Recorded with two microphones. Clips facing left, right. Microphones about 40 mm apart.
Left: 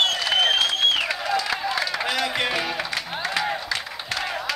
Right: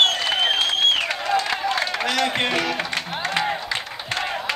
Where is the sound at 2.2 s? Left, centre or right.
Right.